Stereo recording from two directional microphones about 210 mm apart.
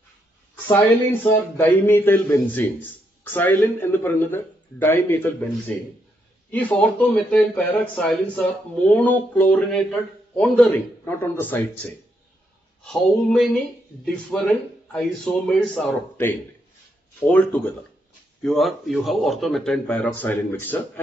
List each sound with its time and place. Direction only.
1.3 s a man's voice: 10° left (ahead or behind)